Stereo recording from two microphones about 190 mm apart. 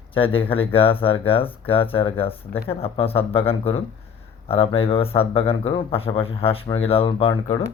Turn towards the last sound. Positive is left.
turn(degrees=30)  # may be behind; listen again after turning